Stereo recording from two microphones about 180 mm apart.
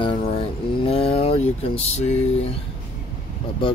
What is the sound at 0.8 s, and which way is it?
Speech, 30° left (ahead or behind).